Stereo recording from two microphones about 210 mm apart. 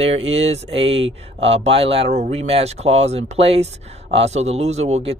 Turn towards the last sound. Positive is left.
turn(degrees=-30)  # may be behind; listen again after turning